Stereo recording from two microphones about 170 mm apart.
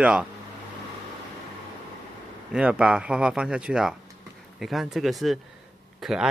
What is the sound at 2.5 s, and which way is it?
Speech, 5° right (ahead or behind).